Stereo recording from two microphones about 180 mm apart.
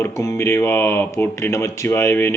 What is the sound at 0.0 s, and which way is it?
Speech, 20° left (ahead or behind).